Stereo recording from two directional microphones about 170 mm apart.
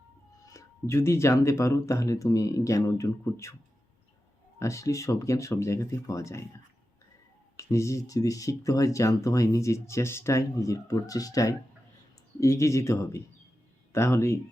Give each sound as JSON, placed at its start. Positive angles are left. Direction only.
{"t": 0.4, "sound": "speech", "side_deg": 15}
{"t": 4.6, "sound": "speech", "side_deg": 20}
{"t": 7.5, "sound": "speech", "side_deg": 15}